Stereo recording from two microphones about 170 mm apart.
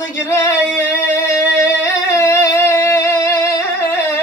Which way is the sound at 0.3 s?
15° left (ahead or behind).